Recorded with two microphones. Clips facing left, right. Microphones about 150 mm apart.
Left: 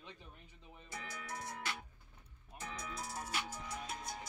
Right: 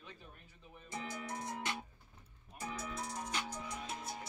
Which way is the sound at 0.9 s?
25° right (ahead or behind).